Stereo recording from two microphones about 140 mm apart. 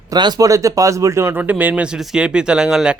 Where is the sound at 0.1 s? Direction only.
30° right (ahead or behind).